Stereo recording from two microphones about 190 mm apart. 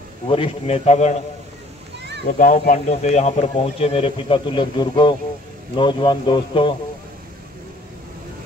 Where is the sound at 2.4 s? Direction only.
45° left (ahead or behind); by 6.7 s 25° left (ahead or behind).